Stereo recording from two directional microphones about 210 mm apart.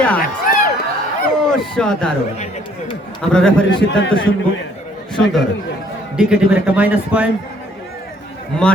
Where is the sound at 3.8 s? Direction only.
60° left (ahead or behind).